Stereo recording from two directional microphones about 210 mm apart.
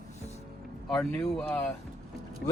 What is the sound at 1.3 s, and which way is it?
Speech, 5° left (ahead or behind).